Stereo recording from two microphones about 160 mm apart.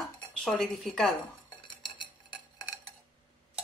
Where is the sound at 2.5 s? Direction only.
25° left (ahead or behind).